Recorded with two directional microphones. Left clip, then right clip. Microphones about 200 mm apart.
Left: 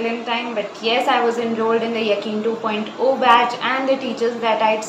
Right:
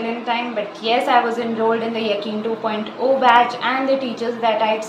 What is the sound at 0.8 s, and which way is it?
Speech, 5° left (ahead or behind).